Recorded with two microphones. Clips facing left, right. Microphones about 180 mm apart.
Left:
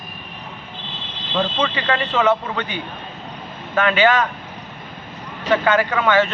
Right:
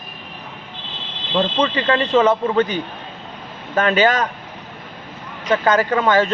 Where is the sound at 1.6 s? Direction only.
35° right (ahead or behind).